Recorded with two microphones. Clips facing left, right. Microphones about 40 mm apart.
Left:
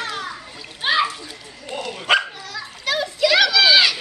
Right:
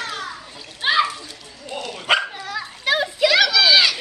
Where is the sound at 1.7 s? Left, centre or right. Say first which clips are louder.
Left 1 dB; centre.